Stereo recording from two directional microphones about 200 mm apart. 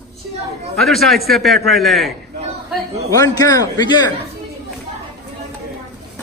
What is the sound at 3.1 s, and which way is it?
A man's voice, 20° left (ahead or behind).